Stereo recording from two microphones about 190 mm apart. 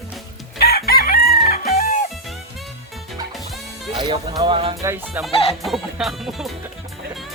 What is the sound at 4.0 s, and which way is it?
Music, 20° right (ahead or behind).